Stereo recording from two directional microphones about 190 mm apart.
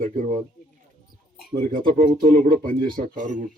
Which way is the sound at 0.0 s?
45° right (ahead or behind).